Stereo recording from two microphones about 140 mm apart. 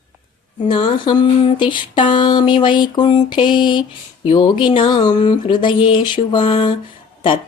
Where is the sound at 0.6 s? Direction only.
35° left (ahead or behind).